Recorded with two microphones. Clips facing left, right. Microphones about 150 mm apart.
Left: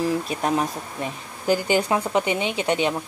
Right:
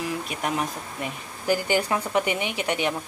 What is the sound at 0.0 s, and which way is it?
Speech, 30° left (ahead or behind).